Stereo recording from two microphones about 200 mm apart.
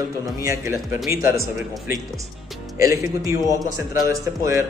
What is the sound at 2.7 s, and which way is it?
A man's voice, 15° right (ahead or behind).